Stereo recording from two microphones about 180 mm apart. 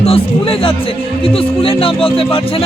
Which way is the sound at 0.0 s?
30° left (ahead or behind).